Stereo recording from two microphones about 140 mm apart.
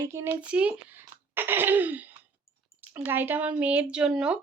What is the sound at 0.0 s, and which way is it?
Speech, 20° right (ahead or behind).